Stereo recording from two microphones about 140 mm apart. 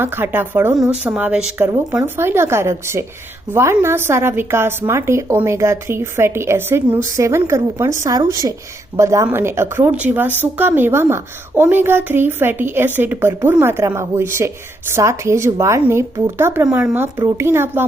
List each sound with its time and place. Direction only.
0.0 s a woman's voice: 15° right (ahead or behind)
16.6 s speech: 10° right (ahead or behind)